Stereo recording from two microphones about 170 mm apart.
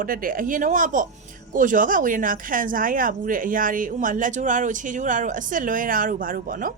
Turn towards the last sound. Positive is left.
turn(degrees=-55)  # may be behind; listen again after turning